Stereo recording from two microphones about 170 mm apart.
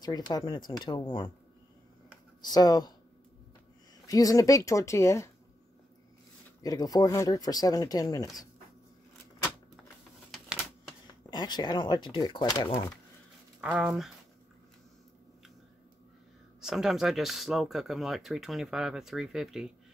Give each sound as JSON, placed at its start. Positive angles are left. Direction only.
{"t": 0.0, "sound": "speech", "side_deg": 25}
{"t": 2.4, "sound": "speech", "side_deg": 25}
{"t": 4.1, "sound": "speech", "side_deg": 20}
{"t": 6.6, "sound": "speech", "side_deg": 20}
{"t": 10.3, "sound": "a sound", "side_deg": 0}
{"t": 11.1, "sound": "speech", "side_deg": 25}
{"t": 13.6, "sound": "speech", "side_deg": -5}
{"t": 16.6, "sound": "speech", "side_deg": 0}